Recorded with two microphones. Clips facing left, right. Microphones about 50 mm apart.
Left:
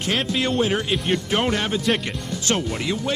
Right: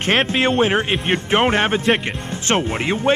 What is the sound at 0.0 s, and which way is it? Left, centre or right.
Speech, right.